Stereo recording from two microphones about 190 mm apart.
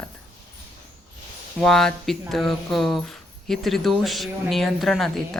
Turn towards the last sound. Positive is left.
turn(degrees=0)  # may be behind; listen again after turning